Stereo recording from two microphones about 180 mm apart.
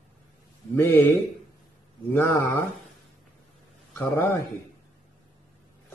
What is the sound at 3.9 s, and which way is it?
Speech, 10° left (ahead or behind).